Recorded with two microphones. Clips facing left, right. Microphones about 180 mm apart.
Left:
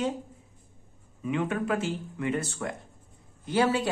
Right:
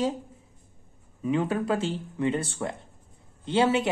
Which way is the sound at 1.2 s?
35° right (ahead or behind).